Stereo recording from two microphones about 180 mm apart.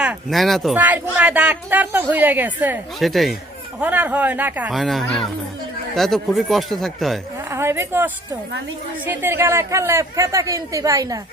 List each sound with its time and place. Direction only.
0.0 s speech: 5° right (ahead or behind)
7.5 s speech: 15° right (ahead or behind)